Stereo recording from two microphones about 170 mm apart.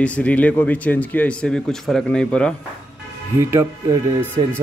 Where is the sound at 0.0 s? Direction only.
5° left (ahead or behind).